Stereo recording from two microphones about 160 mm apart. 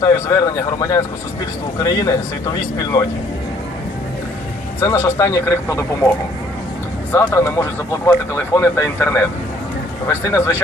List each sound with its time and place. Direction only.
0.0 s speech: 20° left (ahead or behind)
4.8 s speech: 15° left (ahead or behind)